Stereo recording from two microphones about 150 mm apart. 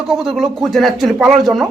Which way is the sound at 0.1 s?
Centre (ahead or behind).